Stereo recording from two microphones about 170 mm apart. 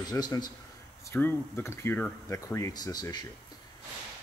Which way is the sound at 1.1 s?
10° left (ahead or behind).